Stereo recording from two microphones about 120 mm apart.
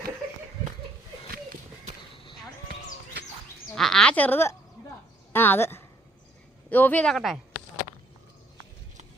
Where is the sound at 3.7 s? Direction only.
5° left (ahead or behind).